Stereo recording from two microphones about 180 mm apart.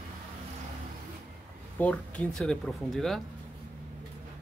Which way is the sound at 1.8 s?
5° left (ahead or behind).